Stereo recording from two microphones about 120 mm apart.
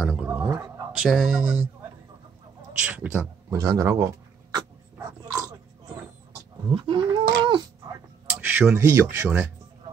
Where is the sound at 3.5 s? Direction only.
30° right (ahead or behind).